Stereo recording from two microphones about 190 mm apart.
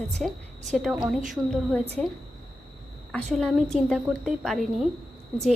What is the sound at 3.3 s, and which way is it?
A woman's voice, centre (ahead or behind).